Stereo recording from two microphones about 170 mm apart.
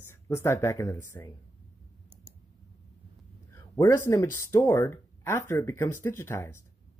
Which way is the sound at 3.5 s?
20° left (ahead or behind).